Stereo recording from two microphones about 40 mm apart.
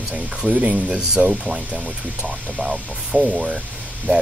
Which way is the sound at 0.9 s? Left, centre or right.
Centre.